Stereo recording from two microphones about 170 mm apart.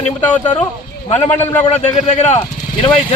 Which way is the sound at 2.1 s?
40° left (ahead or behind).